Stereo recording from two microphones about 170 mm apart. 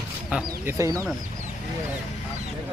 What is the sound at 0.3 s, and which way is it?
Speech, 10° right (ahead or behind).